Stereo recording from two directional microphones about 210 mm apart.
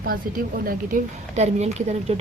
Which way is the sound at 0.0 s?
45° right (ahead or behind).